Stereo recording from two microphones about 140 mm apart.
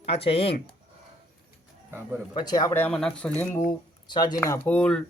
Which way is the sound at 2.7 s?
10° left (ahead or behind).